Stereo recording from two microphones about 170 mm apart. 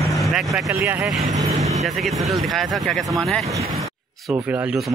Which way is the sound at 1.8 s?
Centre (ahead or behind).